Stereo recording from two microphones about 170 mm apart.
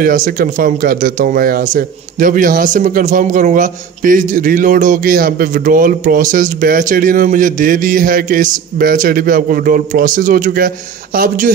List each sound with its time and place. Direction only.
0.0 s a man's voice: 55° right (ahead or behind)